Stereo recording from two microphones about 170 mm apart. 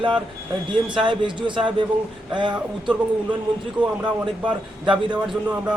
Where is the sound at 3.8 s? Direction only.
5° right (ahead or behind).